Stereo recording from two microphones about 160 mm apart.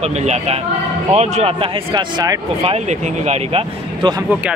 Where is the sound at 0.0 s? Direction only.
45° right (ahead or behind).